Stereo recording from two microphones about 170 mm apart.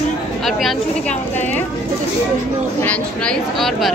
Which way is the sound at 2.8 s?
5° left (ahead or behind).